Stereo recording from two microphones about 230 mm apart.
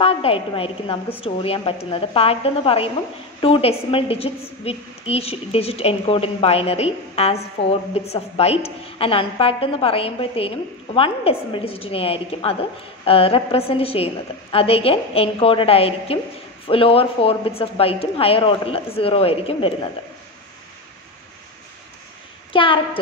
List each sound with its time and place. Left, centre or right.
0.0 s a woman's voice: left
22.5 s a woman's voice: left